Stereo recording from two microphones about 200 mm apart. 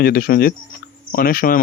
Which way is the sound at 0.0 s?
50° left (ahead or behind).